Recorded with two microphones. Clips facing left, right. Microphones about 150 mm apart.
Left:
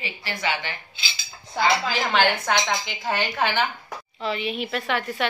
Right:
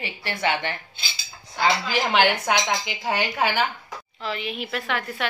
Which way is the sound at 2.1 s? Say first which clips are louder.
Right 1 dB; 15° right (ahead or behind).